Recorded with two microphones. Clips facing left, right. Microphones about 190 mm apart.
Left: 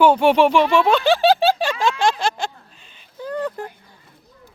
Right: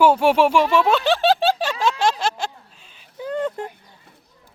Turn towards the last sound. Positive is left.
turn(degrees=-25)  # may be behind; listen again after turning